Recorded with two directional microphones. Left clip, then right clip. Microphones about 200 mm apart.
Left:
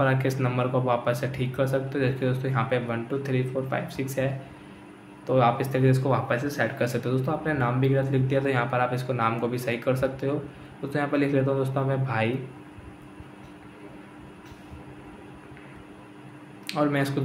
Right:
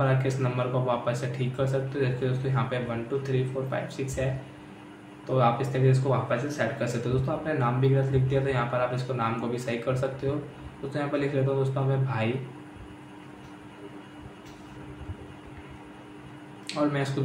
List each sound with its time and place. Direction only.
0.0 s speech: 30° left (ahead or behind)
16.6 s speech: 30° left (ahead or behind)